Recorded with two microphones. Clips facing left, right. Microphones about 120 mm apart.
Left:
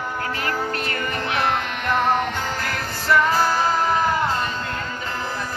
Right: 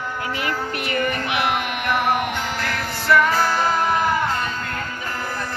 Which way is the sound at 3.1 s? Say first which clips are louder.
Right 1 dB; 35° left (ahead or behind).